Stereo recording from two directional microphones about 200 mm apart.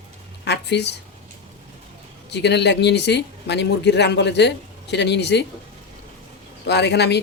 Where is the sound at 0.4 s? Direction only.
60° left (ahead or behind).